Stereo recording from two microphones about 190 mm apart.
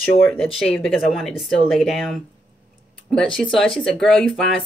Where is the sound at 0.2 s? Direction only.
5° left (ahead or behind).